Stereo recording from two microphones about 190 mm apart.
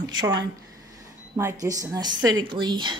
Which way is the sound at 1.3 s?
15° right (ahead or behind).